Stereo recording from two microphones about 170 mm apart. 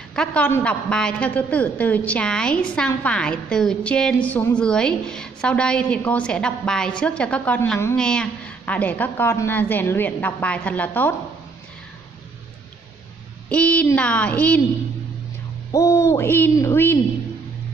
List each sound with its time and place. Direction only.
0.1 s a woman's voice: 5° left (ahead or behind)
13.5 s a woman's voice: 10° left (ahead or behind)
15.7 s a woman's voice: 20° left (ahead or behind)